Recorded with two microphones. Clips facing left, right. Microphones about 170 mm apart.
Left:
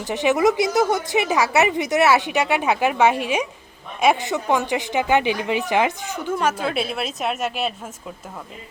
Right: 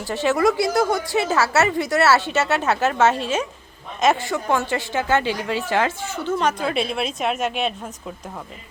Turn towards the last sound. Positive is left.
turn(degrees=5)  # may be behind; listen again after turning